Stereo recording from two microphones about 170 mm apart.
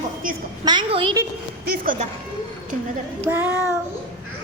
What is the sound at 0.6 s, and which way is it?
Speech, 30° right (ahead or behind).